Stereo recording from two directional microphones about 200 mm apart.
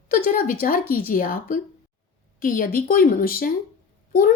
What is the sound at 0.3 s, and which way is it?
A woman's voice, 45° left (ahead or behind).